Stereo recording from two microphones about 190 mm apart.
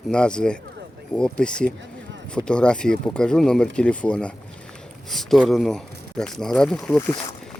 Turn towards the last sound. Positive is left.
turn(degrees=20)  # may be behind; listen again after turning